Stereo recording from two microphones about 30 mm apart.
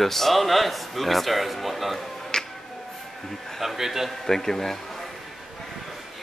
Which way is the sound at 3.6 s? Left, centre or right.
Centre.